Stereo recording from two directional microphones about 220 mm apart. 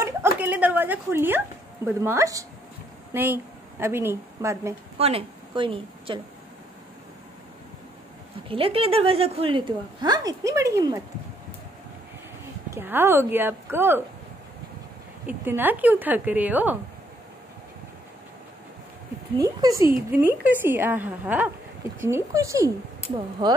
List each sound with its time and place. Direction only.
0.4 s a woman's voice: 5° right (ahead or behind)
4.9 s a woman's voice: 25° right (ahead or behind)
8.5 s a woman's voice: 25° right (ahead or behind)
12.7 s a woman's voice: 10° right (ahead or behind)
15.2 s a woman's voice: 10° right (ahead or behind)
19.3 s a woman's voice: 15° right (ahead or behind)